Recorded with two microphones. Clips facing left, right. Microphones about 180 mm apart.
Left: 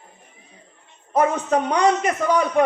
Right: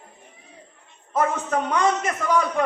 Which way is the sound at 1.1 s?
20° left (ahead or behind).